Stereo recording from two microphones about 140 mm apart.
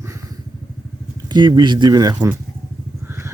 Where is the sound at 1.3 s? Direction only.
30° right (ahead or behind).